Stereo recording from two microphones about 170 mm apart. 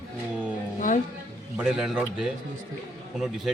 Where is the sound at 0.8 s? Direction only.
50° left (ahead or behind).